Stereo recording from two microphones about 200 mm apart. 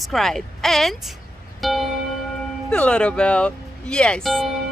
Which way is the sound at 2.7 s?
5° left (ahead or behind).